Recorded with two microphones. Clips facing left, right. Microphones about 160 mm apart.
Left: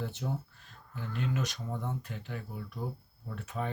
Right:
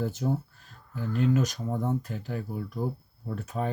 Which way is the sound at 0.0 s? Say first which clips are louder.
Right 8 dB; 40° right (ahead or behind).